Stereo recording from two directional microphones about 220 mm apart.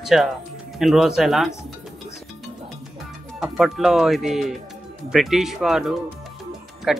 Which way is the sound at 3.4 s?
Centre (ahead or behind).